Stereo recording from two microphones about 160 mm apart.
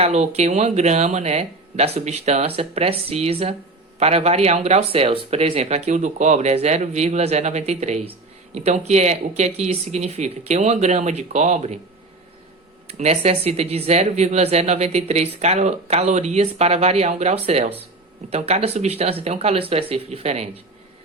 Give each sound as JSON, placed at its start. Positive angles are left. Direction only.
{"t": 0.0, "sound": "speech", "side_deg": -45}
{"t": 12.9, "sound": "speech", "side_deg": -40}